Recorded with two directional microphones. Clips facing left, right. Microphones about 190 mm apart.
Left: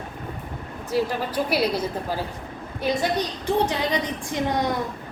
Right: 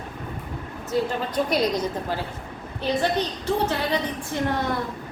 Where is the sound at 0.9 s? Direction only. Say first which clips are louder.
Left 1 dB; 10° left (ahead or behind).